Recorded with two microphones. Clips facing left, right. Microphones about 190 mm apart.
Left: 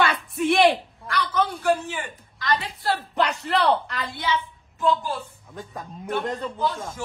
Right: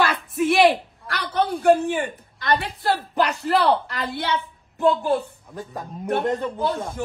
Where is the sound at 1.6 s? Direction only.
55° right (ahead or behind).